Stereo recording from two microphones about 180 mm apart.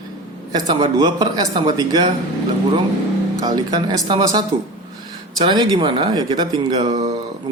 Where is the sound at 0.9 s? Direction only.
20° right (ahead or behind).